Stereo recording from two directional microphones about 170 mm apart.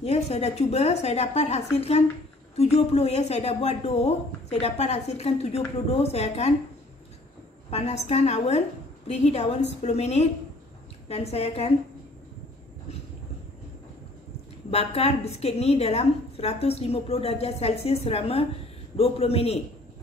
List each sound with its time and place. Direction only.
0.0 s a woman's voice: 40° left (ahead or behind)
7.7 s a woman's voice: 40° left (ahead or behind)
14.7 s a woman's voice: 35° left (ahead or behind)